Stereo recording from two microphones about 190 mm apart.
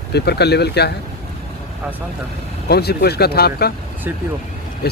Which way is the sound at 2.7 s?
60° left (ahead or behind).